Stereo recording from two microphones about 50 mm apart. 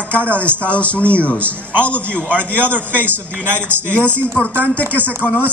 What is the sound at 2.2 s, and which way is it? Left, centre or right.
A man's voice, right.